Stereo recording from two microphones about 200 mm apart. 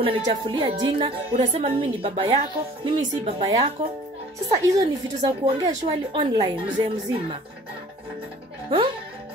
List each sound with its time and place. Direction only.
0.0 s a woman's voice: 25° right (ahead or behind)
4.6 s a woman's voice: 15° right (ahead or behind)
5.4 s a woman's voice: 30° right (ahead or behind)